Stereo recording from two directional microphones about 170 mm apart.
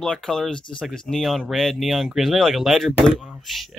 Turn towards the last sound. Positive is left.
turn(degrees=0)  # may be behind; listen again after turning